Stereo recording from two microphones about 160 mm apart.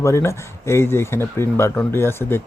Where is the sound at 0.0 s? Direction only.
15° left (ahead or behind).